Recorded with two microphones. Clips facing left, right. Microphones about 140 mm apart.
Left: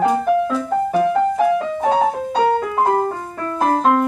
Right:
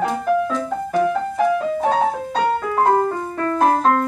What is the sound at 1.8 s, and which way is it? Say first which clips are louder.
Music: left 4 dB; 15° left (ahead or behind).